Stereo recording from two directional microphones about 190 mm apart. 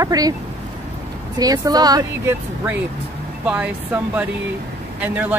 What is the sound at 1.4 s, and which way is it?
Speech, 20° right (ahead or behind).